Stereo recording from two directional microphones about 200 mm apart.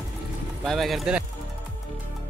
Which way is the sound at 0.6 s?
Centre (ahead or behind).